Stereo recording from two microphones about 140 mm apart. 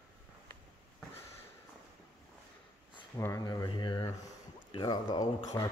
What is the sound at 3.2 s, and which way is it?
Speech, 20° left (ahead or behind).